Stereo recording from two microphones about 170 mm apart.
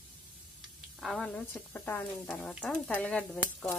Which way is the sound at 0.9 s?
Centre (ahead or behind).